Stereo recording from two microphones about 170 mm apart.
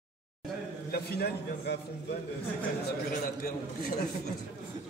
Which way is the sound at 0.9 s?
70° left (ahead or behind).